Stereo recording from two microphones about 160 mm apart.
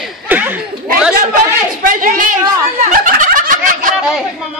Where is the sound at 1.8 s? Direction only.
55° right (ahead or behind).